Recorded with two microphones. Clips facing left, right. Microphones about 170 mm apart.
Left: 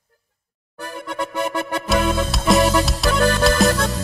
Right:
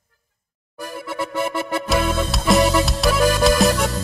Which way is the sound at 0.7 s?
10° right (ahead or behind).